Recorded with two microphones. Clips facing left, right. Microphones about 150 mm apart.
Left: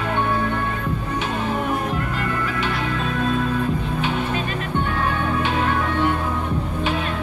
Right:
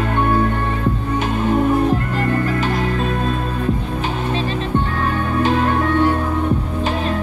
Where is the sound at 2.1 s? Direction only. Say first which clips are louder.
Right 6 dB; 45° right (ahead or behind).